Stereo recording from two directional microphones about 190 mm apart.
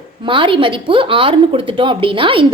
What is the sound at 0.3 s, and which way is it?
A woman's voice, 25° right (ahead or behind).